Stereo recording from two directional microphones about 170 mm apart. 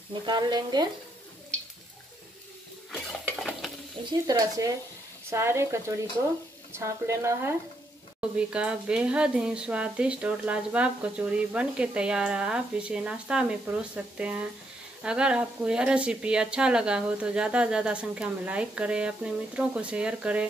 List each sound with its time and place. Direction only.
0.2 s speech: 25° right (ahead or behind)
2.9 s stir: centre (ahead or behind)
4.3 s speech: 20° right (ahead or behind)
6.8 s speech: 15° right (ahead or behind)